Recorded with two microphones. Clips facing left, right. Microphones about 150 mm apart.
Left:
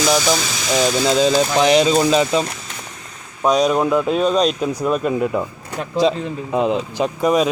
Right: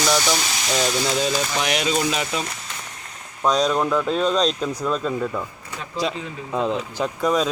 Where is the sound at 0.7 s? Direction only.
25° left (ahead or behind).